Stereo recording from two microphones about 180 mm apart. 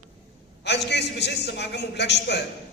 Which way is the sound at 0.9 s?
70° left (ahead or behind).